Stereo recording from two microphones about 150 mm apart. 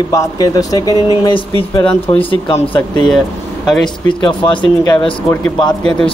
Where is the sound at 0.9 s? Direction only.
25° right (ahead or behind).